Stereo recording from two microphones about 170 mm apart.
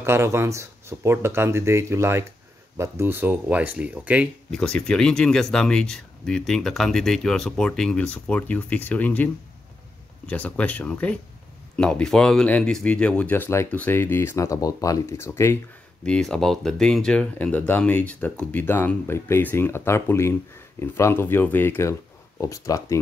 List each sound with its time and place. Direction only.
0.0 s speech: 15° right (ahead or behind)
4.5 s speech: 5° left (ahead or behind)
16.0 s speech: 5° left (ahead or behind)